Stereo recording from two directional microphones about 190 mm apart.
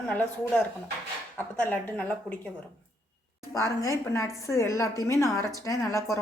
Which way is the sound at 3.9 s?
15° left (ahead or behind).